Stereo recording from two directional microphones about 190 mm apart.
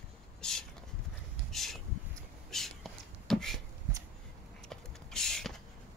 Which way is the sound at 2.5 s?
Centre (ahead or behind).